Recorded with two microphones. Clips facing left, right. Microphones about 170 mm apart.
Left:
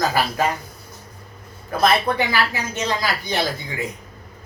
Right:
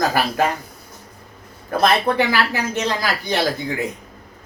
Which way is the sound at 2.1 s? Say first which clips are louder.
Right 3 dB; 60° right (ahead or behind).